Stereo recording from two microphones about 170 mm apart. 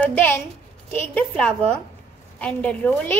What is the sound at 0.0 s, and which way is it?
A woman's voice, 10° left (ahead or behind).